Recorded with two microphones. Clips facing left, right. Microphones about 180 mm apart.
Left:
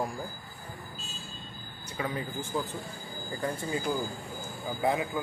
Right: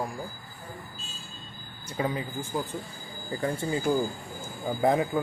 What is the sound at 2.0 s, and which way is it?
Speech, 30° right (ahead or behind).